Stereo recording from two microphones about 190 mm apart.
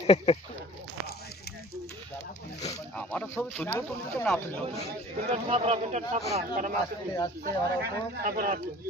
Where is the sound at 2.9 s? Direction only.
5° left (ahead or behind).